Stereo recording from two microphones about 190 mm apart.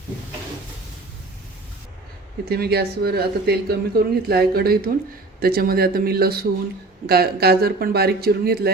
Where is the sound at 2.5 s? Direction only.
55° right (ahead or behind).